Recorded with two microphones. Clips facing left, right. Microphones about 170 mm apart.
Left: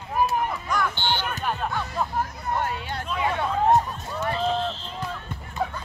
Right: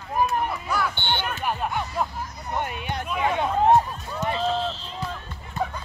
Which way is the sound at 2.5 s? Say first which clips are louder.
Right 1 dB; 20° right (ahead or behind).